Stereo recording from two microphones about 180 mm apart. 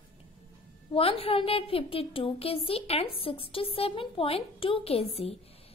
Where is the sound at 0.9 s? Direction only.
30° left (ahead or behind).